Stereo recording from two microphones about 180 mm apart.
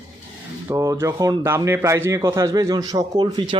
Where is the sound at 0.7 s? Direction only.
15° right (ahead or behind).